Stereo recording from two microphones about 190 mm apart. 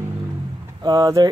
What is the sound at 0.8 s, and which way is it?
Speech, 20° right (ahead or behind).